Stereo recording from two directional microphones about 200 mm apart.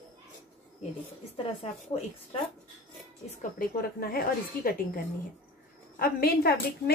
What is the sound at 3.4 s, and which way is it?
A woman's voice, 45° left (ahead or behind).